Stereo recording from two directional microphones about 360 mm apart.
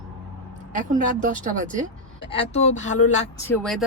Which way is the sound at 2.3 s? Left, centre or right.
Centre.